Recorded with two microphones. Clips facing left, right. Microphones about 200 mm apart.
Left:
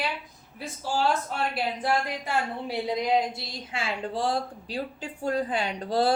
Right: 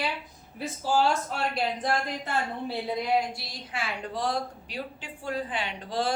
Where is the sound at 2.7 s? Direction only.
20° left (ahead or behind).